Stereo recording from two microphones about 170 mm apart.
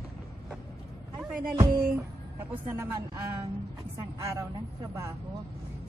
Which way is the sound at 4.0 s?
20° right (ahead or behind).